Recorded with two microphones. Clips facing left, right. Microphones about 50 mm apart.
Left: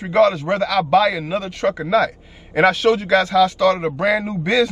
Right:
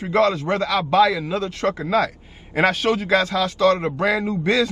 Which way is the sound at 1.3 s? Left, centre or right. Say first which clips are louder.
Left 2 dB; centre.